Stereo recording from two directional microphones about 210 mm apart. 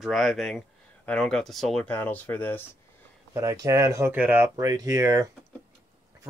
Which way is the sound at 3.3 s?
15° right (ahead or behind).